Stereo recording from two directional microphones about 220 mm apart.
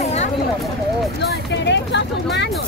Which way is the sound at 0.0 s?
30° left (ahead or behind).